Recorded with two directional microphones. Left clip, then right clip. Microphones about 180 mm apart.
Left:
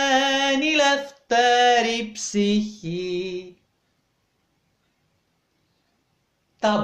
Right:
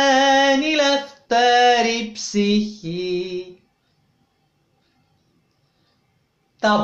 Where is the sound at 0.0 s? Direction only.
30° left (ahead or behind).